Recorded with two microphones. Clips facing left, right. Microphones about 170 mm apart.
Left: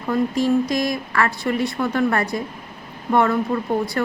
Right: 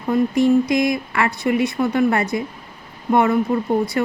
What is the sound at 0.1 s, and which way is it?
Speech, 20° right (ahead or behind).